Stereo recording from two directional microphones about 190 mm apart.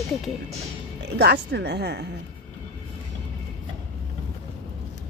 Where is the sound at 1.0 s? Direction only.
60° right (ahead or behind).